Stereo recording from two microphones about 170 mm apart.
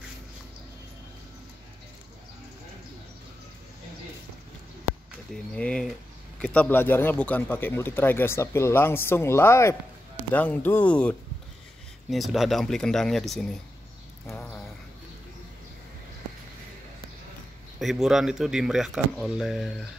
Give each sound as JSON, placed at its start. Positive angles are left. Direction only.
{"t": 5.3, "sound": "speech", "side_deg": 5}
{"t": 14.2, "sound": "a sound", "side_deg": 5}
{"t": 17.7, "sound": "speech", "side_deg": 0}